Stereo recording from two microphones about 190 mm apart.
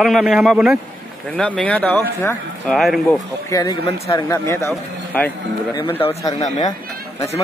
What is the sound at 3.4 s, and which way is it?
Speech, 15° left (ahead or behind).